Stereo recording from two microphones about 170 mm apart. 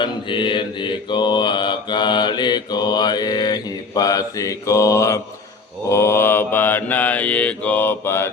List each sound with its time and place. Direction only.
0.0 s mantra: 30° left (ahead or behind)